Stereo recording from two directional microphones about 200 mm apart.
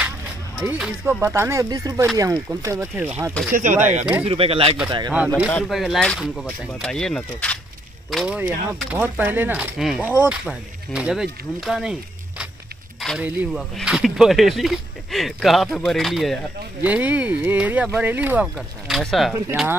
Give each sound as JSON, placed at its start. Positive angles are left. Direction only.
{"t": 0.6, "sound": "speech", "side_deg": -5}
{"t": 3.5, "sound": "speech", "side_deg": -40}
{"t": 4.0, "sound": "speech", "side_deg": -5}
{"t": 4.3, "sound": "speech", "side_deg": -25}
{"t": 5.5, "sound": "speech", "side_deg": 5}